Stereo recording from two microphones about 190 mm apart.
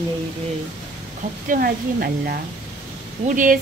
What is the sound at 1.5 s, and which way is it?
Speech, 50° right (ahead or behind).